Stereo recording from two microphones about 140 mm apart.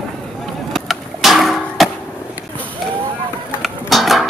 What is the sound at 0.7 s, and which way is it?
Music, centre (ahead or behind).